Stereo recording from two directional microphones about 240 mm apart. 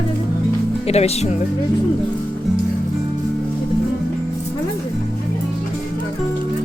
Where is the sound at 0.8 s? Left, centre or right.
Left.